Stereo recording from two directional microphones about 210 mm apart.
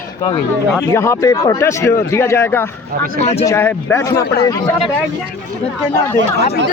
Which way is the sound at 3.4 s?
10° left (ahead or behind).